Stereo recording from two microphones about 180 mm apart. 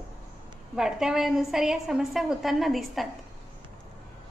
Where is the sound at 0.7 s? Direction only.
5° right (ahead or behind).